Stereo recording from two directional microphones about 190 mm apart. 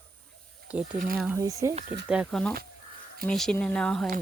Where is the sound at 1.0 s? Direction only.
50° right (ahead or behind).